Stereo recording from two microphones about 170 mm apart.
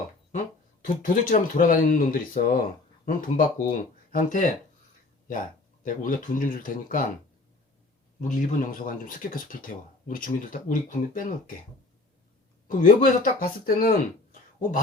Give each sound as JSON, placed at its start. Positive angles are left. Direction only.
{"t": 0.3, "sound": "speech", "side_deg": 50}
{"t": 5.8, "sound": "speech", "side_deg": 50}
{"t": 8.2, "sound": "speech", "side_deg": 50}
{"t": 12.6, "sound": "speech", "side_deg": 55}